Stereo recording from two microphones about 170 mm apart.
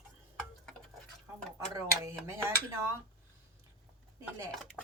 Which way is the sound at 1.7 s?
20° right (ahead or behind).